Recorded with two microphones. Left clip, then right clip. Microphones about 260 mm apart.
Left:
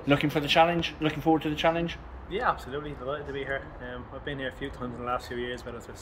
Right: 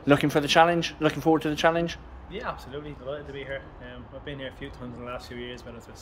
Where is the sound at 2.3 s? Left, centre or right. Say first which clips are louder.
Left 6 dB; centre.